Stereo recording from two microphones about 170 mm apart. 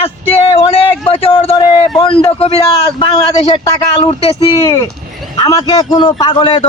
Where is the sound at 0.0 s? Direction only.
35° left (ahead or behind).